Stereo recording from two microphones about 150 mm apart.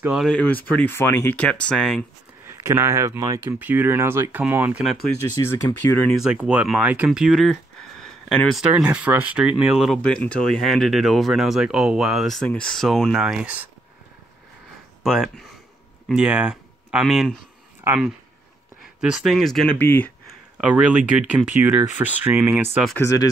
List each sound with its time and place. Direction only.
0.0 s speech: 5° right (ahead or behind)
0.3 s speech: 10° left (ahead or behind)
2.4 s speech: 15° right (ahead or behind)
5.3 s speech: 25° left (ahead or behind)
6.2 s speech: 5° right (ahead or behind)
10.0 s speech: 5° left (ahead or behind)
15.0 s speech: 5° right (ahead or behind)
20.6 s speech: 5° right (ahead or behind)
22.9 s speech: 20° left (ahead or behind)